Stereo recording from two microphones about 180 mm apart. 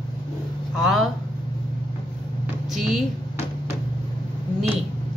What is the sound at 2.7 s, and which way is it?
Speech, centre (ahead or behind).